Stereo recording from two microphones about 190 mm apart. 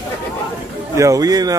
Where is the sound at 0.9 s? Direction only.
15° right (ahead or behind).